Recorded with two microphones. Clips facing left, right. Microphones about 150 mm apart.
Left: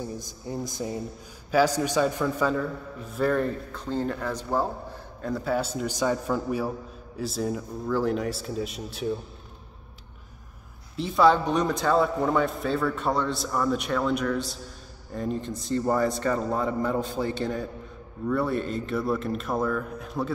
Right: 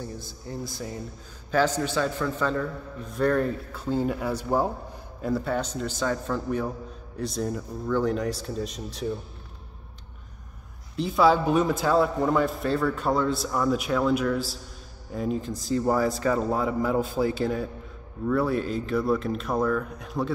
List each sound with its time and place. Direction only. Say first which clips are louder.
0.0 s a man's voice: left 2 dB; 15° left (ahead or behind); by 4.6 s 10° right (ahead or behind)
5.2 s a man's voice: even; centre (ahead or behind)
11.0 s a man's voice: even; centre (ahead or behind)